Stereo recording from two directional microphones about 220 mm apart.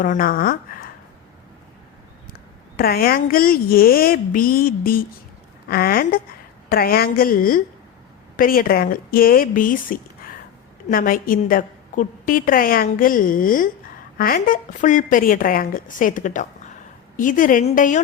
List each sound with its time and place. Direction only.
0.0 s a woman's voice: 40° left (ahead or behind)
2.7 s a woman's voice: 45° left (ahead or behind)